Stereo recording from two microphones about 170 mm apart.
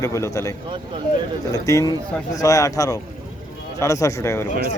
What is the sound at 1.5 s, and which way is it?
Speech, 20° left (ahead or behind).